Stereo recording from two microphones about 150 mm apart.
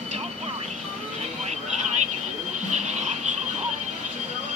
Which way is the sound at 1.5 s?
50° right (ahead or behind).